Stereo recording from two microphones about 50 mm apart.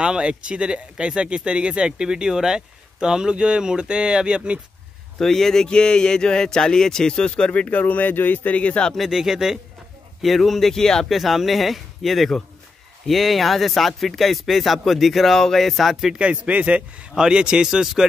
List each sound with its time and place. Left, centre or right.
0.0 s speech: centre
5.2 s speech: centre; by 7.8 s left
7.8 s speech: left
8.5 s speech: left
8.9 s speech: centre
11.1 s speech: centre
16.1 s a man's voice: right